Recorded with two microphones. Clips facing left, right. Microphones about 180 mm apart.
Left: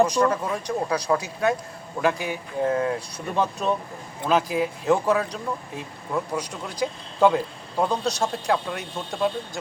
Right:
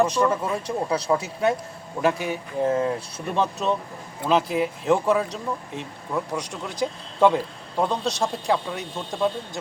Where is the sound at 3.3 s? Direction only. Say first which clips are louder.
Even; 5° left (ahead or behind).